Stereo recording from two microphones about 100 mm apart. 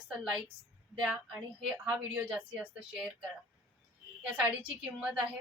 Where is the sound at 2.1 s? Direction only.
15° right (ahead or behind).